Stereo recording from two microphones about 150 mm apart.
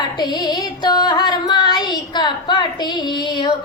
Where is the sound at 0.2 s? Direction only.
30° left (ahead or behind).